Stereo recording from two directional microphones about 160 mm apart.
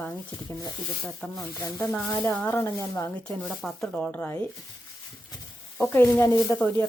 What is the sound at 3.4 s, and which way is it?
Speech, centre (ahead or behind).